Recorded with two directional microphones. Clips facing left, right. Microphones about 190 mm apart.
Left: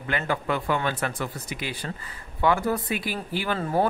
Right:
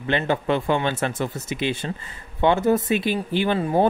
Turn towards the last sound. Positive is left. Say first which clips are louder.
# right 5 dB
turn(degrees=-20)  # may be behind; listen again after turning